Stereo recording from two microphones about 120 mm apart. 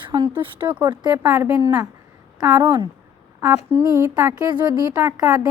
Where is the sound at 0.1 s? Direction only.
40° right (ahead or behind).